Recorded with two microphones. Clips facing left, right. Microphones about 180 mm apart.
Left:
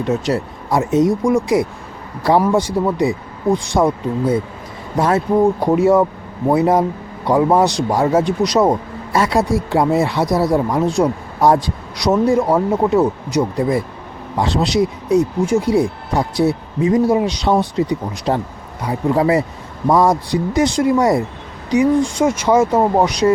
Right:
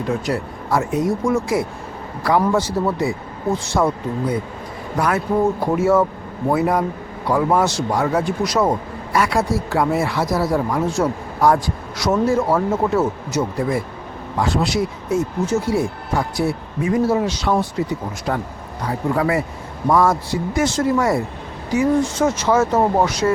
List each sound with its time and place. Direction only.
0.1 s speech: 20° left (ahead or behind)
4.9 s speech: 25° left (ahead or behind)
7.9 s speech: 30° left (ahead or behind)
8.2 s speech: 20° left (ahead or behind)